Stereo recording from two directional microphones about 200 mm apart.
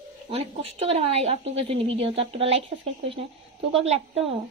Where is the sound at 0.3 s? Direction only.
30° right (ahead or behind).